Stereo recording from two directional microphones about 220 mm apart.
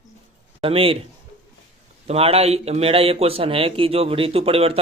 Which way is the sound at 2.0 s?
25° right (ahead or behind).